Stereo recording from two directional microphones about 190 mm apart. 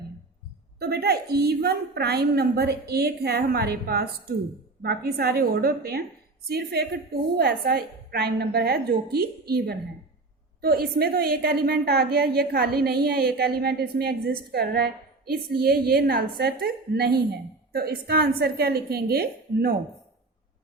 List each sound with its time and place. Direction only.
0.8 s a woman's voice: 55° right (ahead or behind)